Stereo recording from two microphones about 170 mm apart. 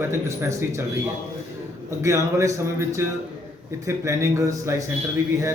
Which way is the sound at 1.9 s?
15° right (ahead or behind).